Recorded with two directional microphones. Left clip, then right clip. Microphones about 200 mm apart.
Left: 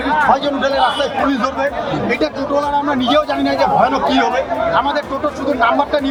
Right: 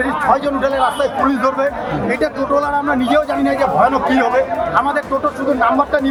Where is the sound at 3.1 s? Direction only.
20° right (ahead or behind).